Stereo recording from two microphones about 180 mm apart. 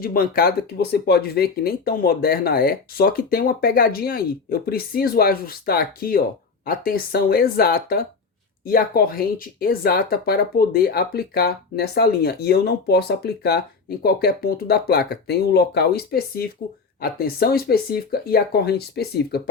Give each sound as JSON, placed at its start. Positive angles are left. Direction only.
{"t": 0.0, "sound": "speech", "side_deg": 55}